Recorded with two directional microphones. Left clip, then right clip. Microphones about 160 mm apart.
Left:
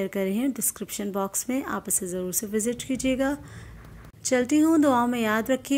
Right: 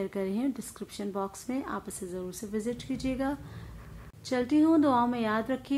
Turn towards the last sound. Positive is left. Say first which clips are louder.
# left 6 dB
turn(degrees=20)  # may be behind; listen again after turning